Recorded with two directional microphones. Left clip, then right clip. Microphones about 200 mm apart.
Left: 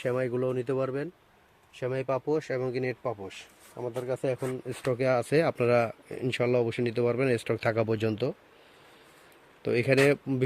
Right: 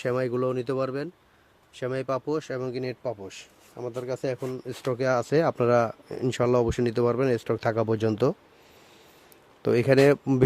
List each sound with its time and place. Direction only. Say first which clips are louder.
0.0 s speech: right 2 dB; 20° right (ahead or behind)
3.8 s speech: right 1 dB; centre (ahead or behind)
4.0 s speech: even; 15° right (ahead or behind)
9.6 s speech: right 4 dB; 20° right (ahead or behind)